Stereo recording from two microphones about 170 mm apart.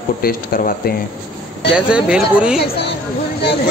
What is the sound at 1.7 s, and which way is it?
Speech, 5° right (ahead or behind).